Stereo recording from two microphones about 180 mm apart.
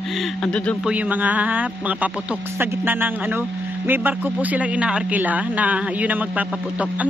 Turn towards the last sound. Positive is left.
turn(degrees=-10)  # may be behind; listen again after turning